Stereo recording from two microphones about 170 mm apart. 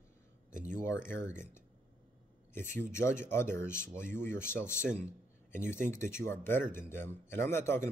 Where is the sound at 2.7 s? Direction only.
15° left (ahead or behind).